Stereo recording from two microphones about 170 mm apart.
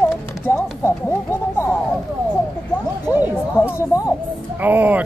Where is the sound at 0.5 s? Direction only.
15° left (ahead or behind).